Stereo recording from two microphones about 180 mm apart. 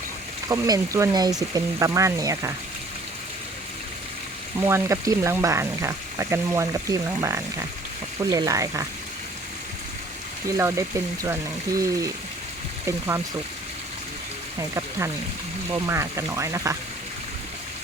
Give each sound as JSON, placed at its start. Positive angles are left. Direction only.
{"t": 0.4, "sound": "speech", "side_deg": -15}
{"t": 4.5, "sound": "speech", "side_deg": -15}
{"t": 10.6, "sound": "speech", "side_deg": -15}
{"t": 14.8, "sound": "speech", "side_deg": -15}